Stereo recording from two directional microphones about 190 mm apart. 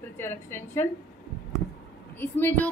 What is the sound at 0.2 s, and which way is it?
Speech, 10° left (ahead or behind).